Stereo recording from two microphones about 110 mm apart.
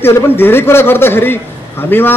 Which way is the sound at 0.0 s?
20° left (ahead or behind).